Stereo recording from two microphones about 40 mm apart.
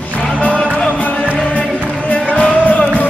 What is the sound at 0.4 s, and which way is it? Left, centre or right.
Music, left.